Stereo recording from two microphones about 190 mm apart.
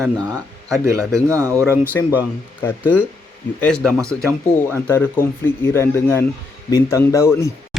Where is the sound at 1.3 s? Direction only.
15° right (ahead or behind).